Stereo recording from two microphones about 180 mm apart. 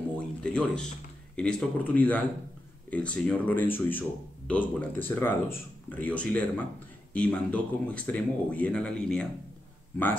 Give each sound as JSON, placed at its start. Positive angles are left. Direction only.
{"t": 0.4, "sound": "speech", "side_deg": 5}